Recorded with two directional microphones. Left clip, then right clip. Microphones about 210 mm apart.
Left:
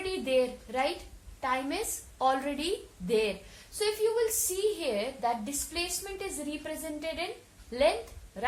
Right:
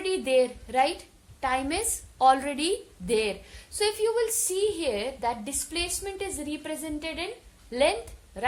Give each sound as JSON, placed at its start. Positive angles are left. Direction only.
{"t": 0.0, "sound": "a woman's voice", "side_deg": -50}